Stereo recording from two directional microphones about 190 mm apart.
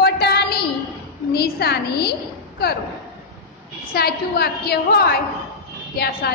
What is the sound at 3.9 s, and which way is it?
A woman's voice, 55° left (ahead or behind).